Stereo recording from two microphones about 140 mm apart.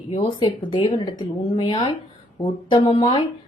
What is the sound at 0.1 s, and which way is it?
Speech, 45° left (ahead or behind).